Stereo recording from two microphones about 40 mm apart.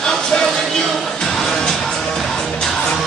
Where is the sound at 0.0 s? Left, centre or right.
Centre.